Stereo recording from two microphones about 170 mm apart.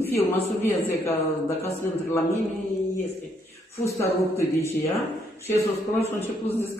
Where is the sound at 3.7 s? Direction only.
15° left (ahead or behind).